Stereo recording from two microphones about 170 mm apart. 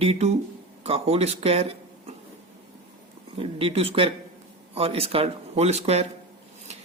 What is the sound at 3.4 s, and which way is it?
Speech, 35° right (ahead or behind).